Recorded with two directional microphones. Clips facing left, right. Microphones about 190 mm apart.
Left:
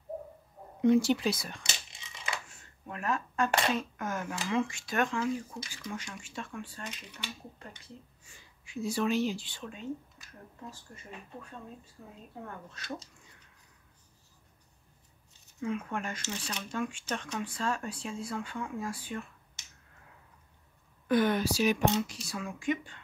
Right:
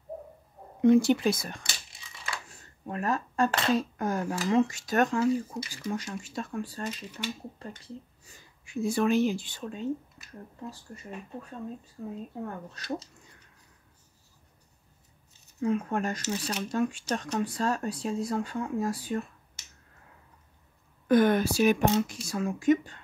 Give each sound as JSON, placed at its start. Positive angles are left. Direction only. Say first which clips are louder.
{"t": 0.8, "sound": "speech", "louder": "right 4 dB", "side_deg": -50}
{"t": 1.6, "sound": "a sound", "louder": "left 1 dB", "side_deg": 20}
{"t": 2.5, "sound": "a sound", "louder": "right 7 dB", "side_deg": -35}
{"t": 3.7, "sound": "speech", "louder": "right 6 dB", "side_deg": -35}
{"t": 8.2, "sound": "a woman's voice", "louder": "right 3 dB", "side_deg": -45}
{"t": 12.6, "sound": "speech", "louder": "right 6 dB", "side_deg": -40}
{"t": 15.6, "sound": "speech", "louder": "right 6 dB", "side_deg": -40}
{"t": 21.1, "sound": "speech", "louder": "right 5 dB", "side_deg": -50}